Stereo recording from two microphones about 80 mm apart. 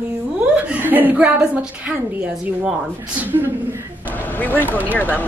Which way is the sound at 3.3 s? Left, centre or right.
Right.